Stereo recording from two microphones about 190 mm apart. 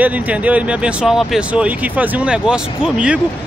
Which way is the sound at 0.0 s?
5° right (ahead or behind).